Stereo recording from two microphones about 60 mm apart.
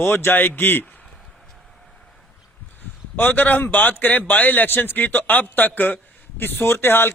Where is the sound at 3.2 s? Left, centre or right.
Left.